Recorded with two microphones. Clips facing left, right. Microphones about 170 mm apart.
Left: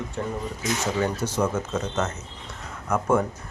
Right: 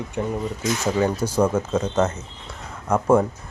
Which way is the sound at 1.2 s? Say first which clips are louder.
Right 5 dB; 30° right (ahead or behind).